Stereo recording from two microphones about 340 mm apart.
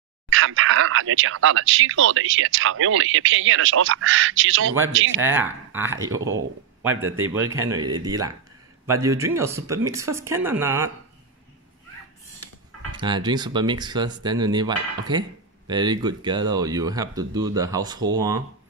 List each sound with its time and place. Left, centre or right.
0.3 s speech: right
5.2 s speech: centre
7.3 s speech: centre
12.9 s speech: centre